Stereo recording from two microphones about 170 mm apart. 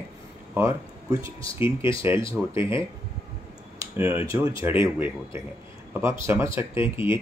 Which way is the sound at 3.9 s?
15° right (ahead or behind).